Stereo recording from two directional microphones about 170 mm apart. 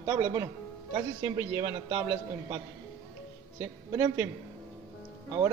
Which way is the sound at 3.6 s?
15° right (ahead or behind).